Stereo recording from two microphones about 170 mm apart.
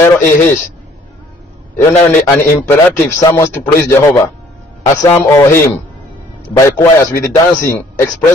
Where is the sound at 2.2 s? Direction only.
15° left (ahead or behind).